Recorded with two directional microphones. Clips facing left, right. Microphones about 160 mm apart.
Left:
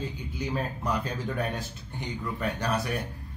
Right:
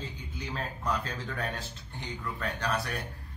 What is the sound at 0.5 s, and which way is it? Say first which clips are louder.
A man's voice: left 2 dB; 15° left (ahead or behind).